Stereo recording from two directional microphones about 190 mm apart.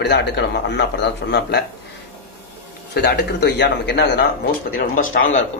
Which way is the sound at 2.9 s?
60° left (ahead or behind).